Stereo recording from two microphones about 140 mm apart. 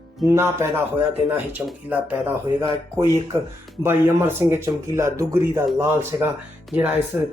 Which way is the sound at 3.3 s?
20° right (ahead or behind).